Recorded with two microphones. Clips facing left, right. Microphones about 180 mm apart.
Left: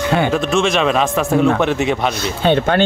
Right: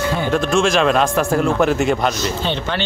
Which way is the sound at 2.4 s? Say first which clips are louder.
Left 8 dB; 55° left (ahead or behind).